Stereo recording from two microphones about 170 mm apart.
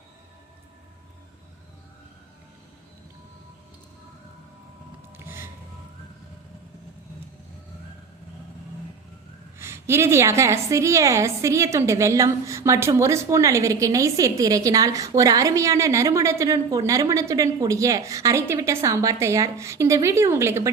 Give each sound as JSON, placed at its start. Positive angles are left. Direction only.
{"t": 5.1, "sound": "music", "side_deg": -15}
{"t": 9.6, "sound": "a woman's voice", "side_deg": -15}